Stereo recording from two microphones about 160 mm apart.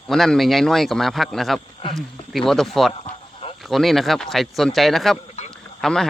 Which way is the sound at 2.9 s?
40° left (ahead or behind).